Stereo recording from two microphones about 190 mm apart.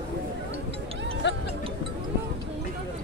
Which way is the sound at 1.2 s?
70° left (ahead or behind).